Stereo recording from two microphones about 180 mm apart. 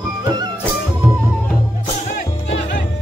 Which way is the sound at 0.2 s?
25° right (ahead or behind).